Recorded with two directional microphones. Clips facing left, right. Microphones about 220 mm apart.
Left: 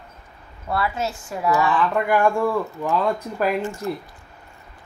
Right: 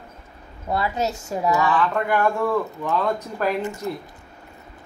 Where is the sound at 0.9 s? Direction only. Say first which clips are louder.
Right 2 dB; 40° right (ahead or behind).